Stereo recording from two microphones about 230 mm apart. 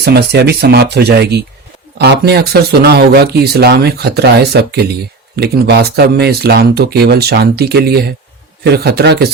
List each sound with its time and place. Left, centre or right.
0.0 s speech: right